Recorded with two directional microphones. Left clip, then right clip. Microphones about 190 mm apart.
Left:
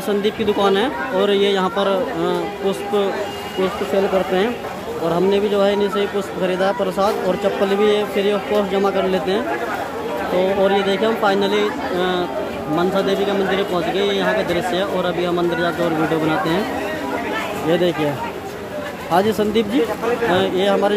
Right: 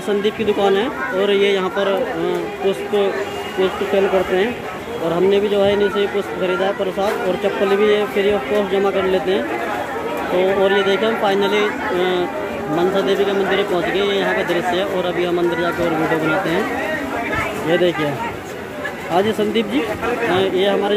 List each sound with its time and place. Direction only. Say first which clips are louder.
0.2 s a man's voice: even; 15° left (ahead or behind)
5.3 s a man's voice: right 2 dB; 10° left (ahead or behind)
10.6 s a man's voice: right 1 dB; 15° left (ahead or behind)
17.6 s a man's voice: right 1 dB; 10° left (ahead or behind)
19.1 s a man's voice: left 1 dB; 10° left (ahead or behind)